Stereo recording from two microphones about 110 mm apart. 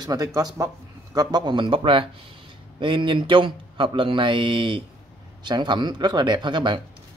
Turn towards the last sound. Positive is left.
turn(degrees=-45)  # may be behind; listen again after turning